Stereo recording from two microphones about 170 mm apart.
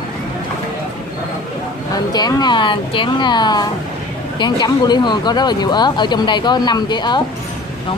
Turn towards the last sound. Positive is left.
turn(degrees=25)  # may be behind; listen again after turning